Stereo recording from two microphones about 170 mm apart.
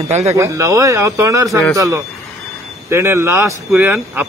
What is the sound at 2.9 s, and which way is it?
A man's voice, 15° right (ahead or behind).